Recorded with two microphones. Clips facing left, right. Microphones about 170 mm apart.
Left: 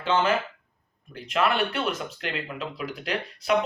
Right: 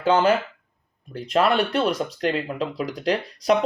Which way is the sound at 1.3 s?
35° right (ahead or behind).